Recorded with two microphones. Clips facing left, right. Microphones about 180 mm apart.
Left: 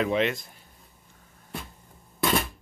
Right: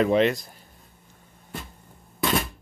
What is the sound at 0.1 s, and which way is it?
Speech, 40° right (ahead or behind).